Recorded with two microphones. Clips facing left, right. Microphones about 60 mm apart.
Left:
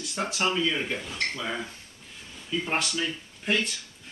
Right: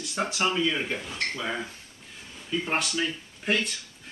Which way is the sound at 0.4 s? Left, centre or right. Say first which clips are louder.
Even; centre.